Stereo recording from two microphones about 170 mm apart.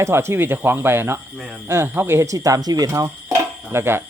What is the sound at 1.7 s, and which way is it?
Speech, 15° right (ahead or behind).